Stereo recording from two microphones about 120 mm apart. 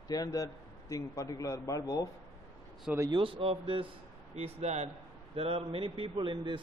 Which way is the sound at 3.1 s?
45° right (ahead or behind).